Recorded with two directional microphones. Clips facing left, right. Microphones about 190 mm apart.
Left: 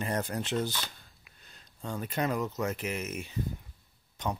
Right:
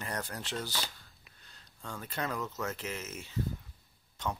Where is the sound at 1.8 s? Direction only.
20° left (ahead or behind).